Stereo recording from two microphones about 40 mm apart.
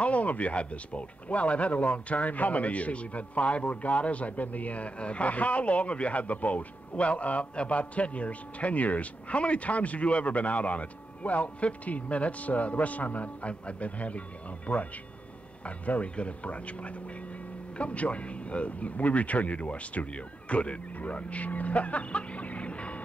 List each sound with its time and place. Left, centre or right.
0.0 s speech: left